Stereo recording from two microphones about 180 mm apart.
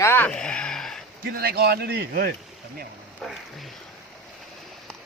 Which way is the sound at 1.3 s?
60° right (ahead or behind).